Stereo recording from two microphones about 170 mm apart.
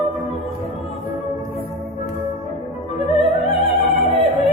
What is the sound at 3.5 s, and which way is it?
Opera, 35° left (ahead or behind).